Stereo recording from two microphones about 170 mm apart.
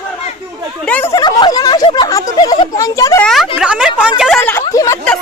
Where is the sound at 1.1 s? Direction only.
25° left (ahead or behind).